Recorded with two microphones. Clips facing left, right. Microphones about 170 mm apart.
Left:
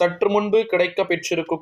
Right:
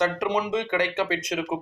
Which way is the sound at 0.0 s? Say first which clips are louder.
Left 7 dB; 20° left (ahead or behind).